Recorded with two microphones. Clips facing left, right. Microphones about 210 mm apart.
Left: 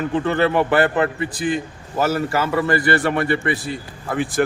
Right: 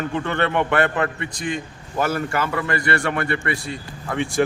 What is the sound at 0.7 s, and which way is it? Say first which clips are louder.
Speech: left 3 dB; 35° left (ahead or behind).